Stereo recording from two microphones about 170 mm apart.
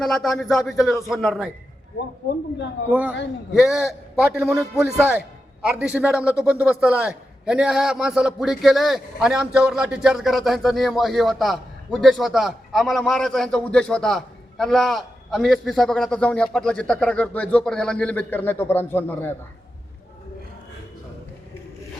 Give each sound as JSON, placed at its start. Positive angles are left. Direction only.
{"t": 0.0, "sound": "a man's voice", "side_deg": 0}
{"t": 2.9, "sound": "a man's voice", "side_deg": -10}